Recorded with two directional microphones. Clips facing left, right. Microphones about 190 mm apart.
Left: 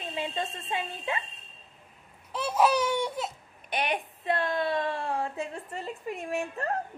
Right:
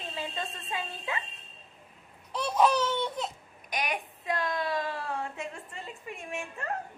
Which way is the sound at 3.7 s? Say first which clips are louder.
Left 3 dB; 30° left (ahead or behind).